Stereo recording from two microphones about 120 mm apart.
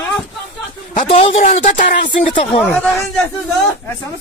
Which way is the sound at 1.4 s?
70° left (ahead or behind).